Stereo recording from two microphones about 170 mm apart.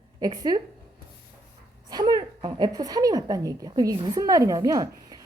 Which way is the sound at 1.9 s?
25° right (ahead or behind).